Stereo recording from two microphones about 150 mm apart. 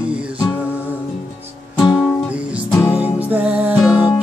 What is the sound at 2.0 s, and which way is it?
Music, 5° right (ahead or behind).